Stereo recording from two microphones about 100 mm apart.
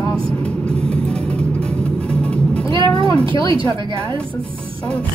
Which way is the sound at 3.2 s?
60° right (ahead or behind).